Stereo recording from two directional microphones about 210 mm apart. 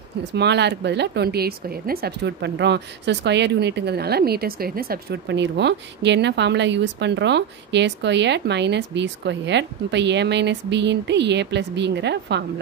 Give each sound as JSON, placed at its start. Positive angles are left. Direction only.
{"t": 0.3, "sound": "speech", "side_deg": -55}